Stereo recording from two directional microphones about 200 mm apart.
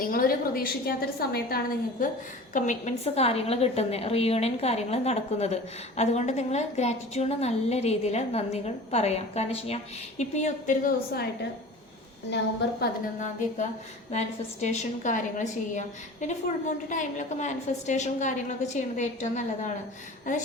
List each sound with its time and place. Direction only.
0.0 s a woman's voice: 45° left (ahead or behind)
12.8 s a woman's voice: 40° left (ahead or behind)